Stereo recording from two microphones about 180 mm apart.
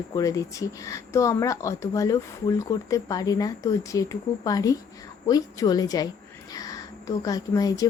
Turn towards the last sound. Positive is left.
turn(degrees=20)  # may be behind; listen again after turning